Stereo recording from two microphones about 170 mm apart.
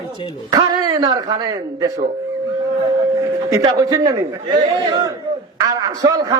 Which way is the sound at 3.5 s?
20° right (ahead or behind).